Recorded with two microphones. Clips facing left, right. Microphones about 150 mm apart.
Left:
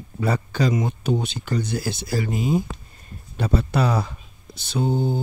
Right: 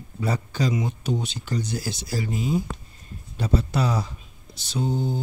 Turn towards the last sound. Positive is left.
turn(degrees=55)  # may be behind; listen again after turning